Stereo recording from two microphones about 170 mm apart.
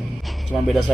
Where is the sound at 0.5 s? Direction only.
Centre (ahead or behind).